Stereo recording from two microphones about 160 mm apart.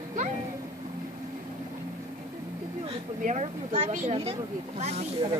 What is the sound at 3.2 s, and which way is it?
Speech, 50° right (ahead or behind).